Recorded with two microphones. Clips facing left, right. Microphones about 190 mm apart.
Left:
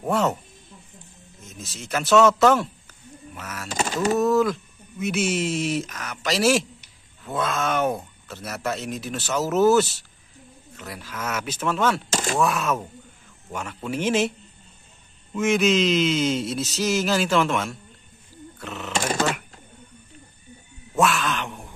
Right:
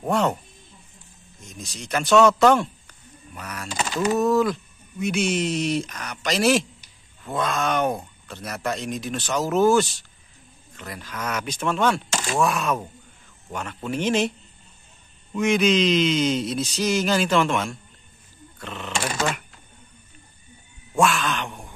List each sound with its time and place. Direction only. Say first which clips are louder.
0.0 s speech: even; 5° left (ahead or behind)
1.4 s speech: right 1 dB; 5° left (ahead or behind)
3.7 s speech: even; 45° left (ahead or behind)
4.2 s speech: even; centre (ahead or behind)
15.3 s speech: even; centre (ahead or behind)
20.9 s a sound: right 1 dB; centre (ahead or behind)